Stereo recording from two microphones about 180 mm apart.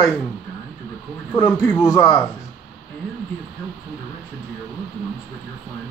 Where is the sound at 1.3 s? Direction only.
10° left (ahead or behind).